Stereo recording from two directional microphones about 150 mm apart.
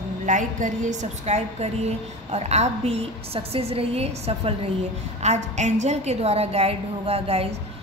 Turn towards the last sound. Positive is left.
turn(degrees=-40)  # may be behind; listen again after turning